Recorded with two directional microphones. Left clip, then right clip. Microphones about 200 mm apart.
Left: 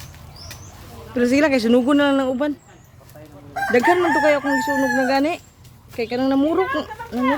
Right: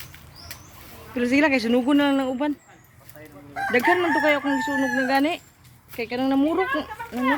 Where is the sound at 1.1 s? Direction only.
10° left (ahead or behind).